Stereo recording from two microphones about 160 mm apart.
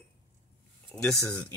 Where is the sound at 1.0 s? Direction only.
10° left (ahead or behind).